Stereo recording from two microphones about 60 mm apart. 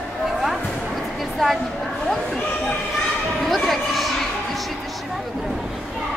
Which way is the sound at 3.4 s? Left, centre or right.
Centre.